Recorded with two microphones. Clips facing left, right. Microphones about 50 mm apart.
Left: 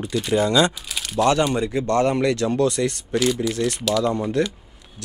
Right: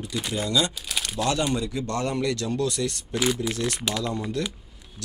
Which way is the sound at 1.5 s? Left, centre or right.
Left.